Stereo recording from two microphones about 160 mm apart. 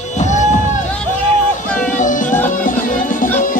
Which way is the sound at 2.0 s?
55° left (ahead or behind).